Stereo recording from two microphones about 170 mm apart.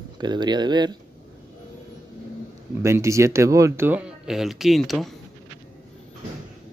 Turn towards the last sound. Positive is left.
turn(degrees=0)  # may be behind; listen again after turning